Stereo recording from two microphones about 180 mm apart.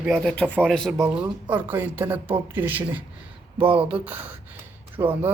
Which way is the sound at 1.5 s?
10° right (ahead or behind).